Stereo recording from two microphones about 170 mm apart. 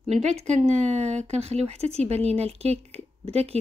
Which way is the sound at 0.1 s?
40° right (ahead or behind).